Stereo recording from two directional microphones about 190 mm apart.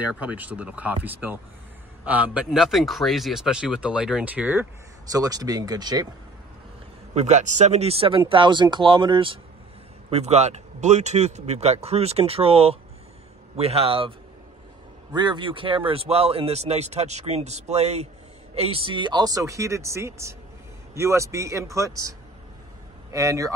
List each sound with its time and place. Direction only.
0.0 s a man's voice: 5° right (ahead or behind)
5.1 s speech: 20° right (ahead or behind)
7.2 s speech: 40° right (ahead or behind)
15.1 s speech: 25° right (ahead or behind)
23.1 s speech: 15° right (ahead or behind)